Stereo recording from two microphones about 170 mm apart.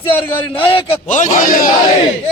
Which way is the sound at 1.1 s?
50° left (ahead or behind).